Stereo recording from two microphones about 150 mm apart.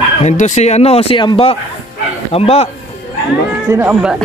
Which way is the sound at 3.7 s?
10° right (ahead or behind).